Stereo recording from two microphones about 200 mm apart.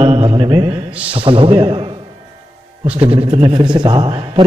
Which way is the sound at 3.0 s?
30° right (ahead or behind).